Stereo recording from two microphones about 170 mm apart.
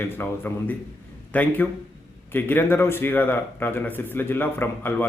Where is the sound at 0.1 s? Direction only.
10° left (ahead or behind).